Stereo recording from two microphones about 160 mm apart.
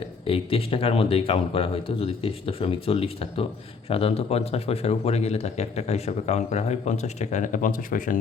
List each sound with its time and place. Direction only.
0.3 s speech: 35° left (ahead or behind); by 8.2 s 55° left (ahead or behind)